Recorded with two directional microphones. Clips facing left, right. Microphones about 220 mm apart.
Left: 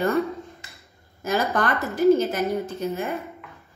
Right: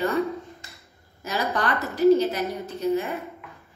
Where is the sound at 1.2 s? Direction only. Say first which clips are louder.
Left 3 dB; 50° left (ahead or behind).